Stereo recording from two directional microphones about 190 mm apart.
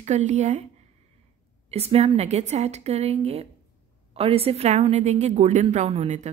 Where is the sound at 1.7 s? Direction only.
30° right (ahead or behind).